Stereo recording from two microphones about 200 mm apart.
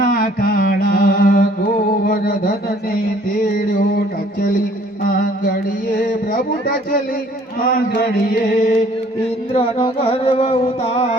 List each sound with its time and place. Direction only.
0.0 s mantra: 45° left (ahead or behind)
3.3 s music: 40° left (ahead or behind)
5.0 s a sound: 45° left (ahead or behind)
7.6 s chant: 45° left (ahead or behind)
9.5 s music: 30° left (ahead or behind)